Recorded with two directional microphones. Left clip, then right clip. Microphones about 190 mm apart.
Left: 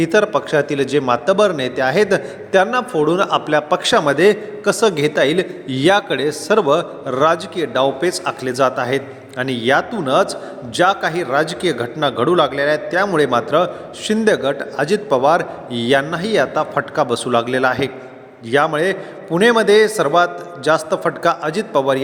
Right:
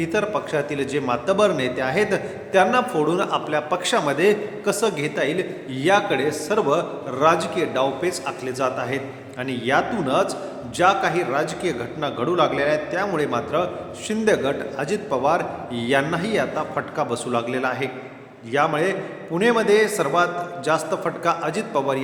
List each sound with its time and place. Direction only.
0.0 s a man's voice: 35° left (ahead or behind)